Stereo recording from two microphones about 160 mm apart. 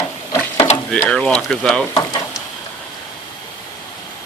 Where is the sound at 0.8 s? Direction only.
5° left (ahead or behind).